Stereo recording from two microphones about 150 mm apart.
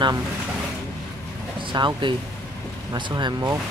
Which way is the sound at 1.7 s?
30° right (ahead or behind).